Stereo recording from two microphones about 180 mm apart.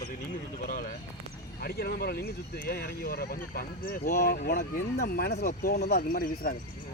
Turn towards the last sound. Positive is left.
turn(degrees=55)  # may be behind; listen again after turning